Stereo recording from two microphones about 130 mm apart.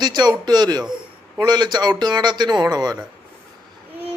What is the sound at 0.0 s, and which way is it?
Speech, 35° right (ahead or behind).